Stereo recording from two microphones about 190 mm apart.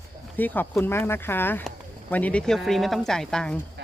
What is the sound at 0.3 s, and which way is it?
Speech, 10° left (ahead or behind).